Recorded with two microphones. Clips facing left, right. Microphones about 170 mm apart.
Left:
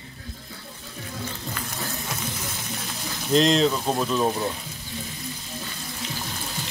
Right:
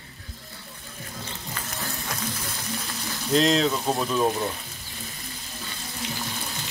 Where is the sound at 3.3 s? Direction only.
Centre (ahead or behind).